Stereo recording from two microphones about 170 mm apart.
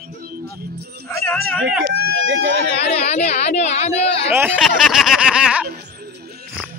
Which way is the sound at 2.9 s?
40° left (ahead or behind).